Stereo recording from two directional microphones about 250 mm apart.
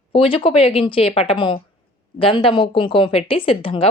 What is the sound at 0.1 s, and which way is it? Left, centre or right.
Speech, left.